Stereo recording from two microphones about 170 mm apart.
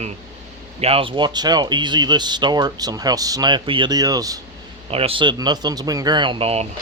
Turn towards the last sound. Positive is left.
turn(degrees=-35)  # may be behind; listen again after turning